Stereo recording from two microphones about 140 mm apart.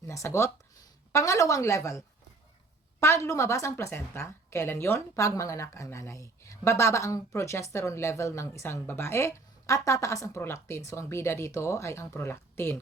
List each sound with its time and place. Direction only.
0.0 s a woman's voice: 20° left (ahead or behind)